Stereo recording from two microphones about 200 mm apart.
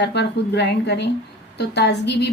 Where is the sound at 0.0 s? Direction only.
60° left (ahead or behind).